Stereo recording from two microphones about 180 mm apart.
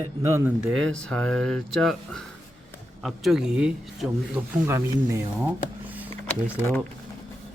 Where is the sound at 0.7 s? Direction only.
5° left (ahead or behind).